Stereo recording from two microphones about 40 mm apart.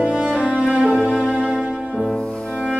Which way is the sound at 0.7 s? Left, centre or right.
Right.